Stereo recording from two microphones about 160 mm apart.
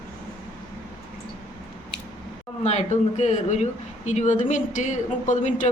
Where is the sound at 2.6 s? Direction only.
45° left (ahead or behind).